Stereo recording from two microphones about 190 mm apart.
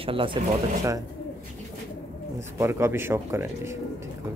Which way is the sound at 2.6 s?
15° right (ahead or behind).